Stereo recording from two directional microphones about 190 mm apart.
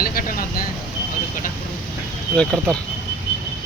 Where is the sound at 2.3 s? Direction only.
5° left (ahead or behind).